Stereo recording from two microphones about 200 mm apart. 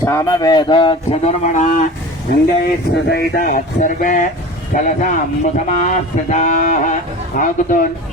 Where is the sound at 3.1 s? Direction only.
50° left (ahead or behind).